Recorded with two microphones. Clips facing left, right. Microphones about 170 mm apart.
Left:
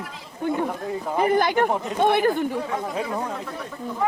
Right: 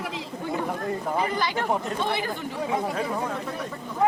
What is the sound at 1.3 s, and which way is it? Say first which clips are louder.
Speech: left 6 dB; 50° left (ahead or behind).